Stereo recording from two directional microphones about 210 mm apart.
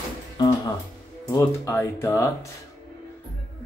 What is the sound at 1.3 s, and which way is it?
Speech, 15° left (ahead or behind).